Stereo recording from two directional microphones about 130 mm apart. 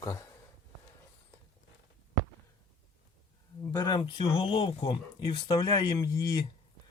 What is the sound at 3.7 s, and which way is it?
Speech, 30° left (ahead or behind).